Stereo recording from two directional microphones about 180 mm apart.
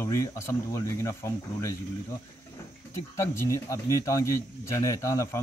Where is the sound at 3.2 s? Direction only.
15° left (ahead or behind).